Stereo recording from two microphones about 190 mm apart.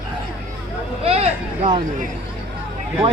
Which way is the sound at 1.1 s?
30° right (ahead or behind).